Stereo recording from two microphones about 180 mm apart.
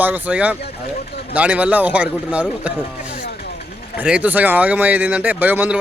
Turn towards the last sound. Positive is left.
turn(degrees=-10)  # may be behind; listen again after turning